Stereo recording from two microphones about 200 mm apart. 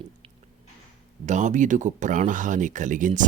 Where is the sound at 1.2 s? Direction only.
35° right (ahead or behind).